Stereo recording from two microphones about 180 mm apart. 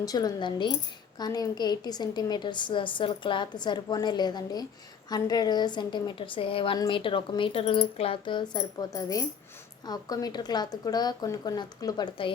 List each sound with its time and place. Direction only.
0.0 s a woman's voice: 20° left (ahead or behind)